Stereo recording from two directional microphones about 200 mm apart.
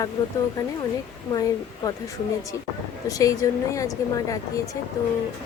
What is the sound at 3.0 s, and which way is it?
Speech, 15° left (ahead or behind).